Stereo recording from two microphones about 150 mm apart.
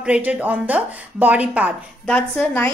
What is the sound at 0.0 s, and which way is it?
Speech, 10° right (ahead or behind).